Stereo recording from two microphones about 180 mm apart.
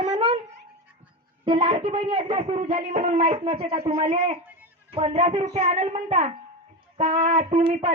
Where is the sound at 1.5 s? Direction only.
30° right (ahead or behind).